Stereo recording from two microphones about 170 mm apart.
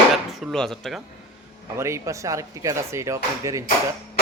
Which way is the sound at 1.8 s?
15° right (ahead or behind).